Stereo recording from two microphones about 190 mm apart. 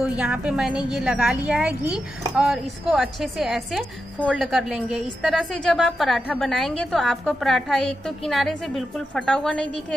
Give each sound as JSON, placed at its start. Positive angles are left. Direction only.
{"t": 0.0, "sound": "a woman's voice", "side_deg": -5}